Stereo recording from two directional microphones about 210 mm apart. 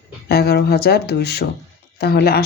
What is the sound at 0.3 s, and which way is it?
Speech, 50° left (ahead or behind).